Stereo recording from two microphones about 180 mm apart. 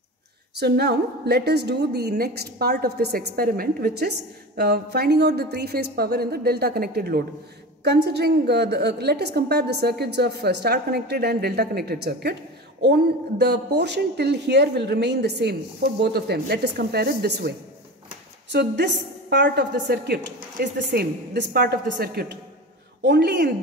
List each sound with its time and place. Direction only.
0.6 s a woman's voice: 65° right (ahead or behind)
7.8 s a woman's voice: 70° right (ahead or behind)
18.5 s a woman's voice: 70° right (ahead or behind)